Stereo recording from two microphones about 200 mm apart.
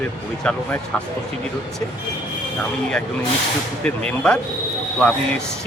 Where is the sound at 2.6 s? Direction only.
5° left (ahead or behind).